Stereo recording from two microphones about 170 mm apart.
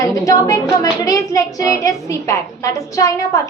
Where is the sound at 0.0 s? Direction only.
20° left (ahead or behind).